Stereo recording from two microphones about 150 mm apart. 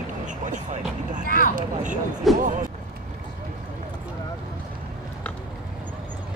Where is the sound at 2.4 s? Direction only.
60° right (ahead or behind).